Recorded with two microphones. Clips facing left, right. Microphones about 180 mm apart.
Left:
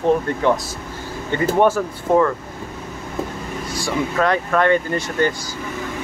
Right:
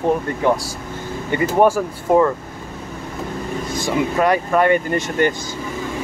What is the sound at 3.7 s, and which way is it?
Speech, 15° right (ahead or behind).